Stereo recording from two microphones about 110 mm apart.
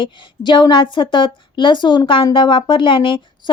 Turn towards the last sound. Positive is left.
turn(degrees=45)  # may be behind; listen again after turning